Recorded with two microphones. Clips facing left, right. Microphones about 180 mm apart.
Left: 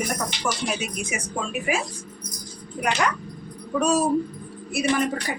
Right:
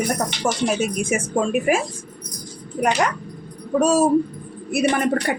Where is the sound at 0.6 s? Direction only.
45° right (ahead or behind).